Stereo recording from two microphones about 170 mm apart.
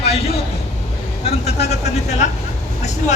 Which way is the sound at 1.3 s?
40° left (ahead or behind).